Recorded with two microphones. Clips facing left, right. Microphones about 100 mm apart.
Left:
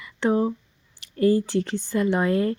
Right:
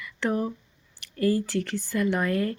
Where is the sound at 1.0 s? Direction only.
20° left (ahead or behind).